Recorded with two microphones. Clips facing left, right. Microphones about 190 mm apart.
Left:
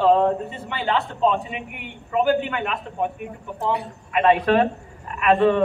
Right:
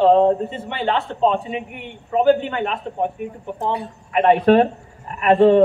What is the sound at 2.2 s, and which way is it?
Speech, 30° right (ahead or behind).